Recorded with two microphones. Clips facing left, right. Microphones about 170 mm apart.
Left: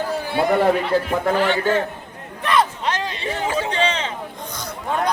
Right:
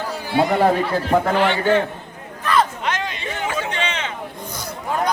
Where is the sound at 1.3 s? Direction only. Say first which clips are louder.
Left 2 dB; 45° left (ahead or behind).